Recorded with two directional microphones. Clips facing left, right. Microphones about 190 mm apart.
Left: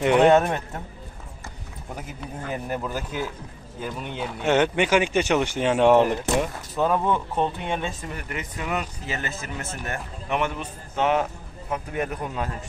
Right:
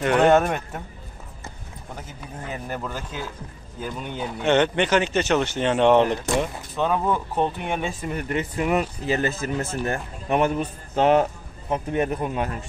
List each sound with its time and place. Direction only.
0.0 s speech: 15° left (ahead or behind)
2.5 s speech: 10° left (ahead or behind); by 7.9 s 10° right (ahead or behind)
8.1 s speech: 30° right (ahead or behind)